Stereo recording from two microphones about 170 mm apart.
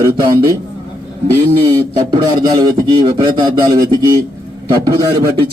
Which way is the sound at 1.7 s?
25° right (ahead or behind).